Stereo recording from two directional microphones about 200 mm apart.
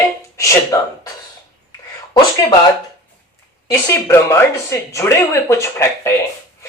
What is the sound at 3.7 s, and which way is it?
Speech, 15° left (ahead or behind).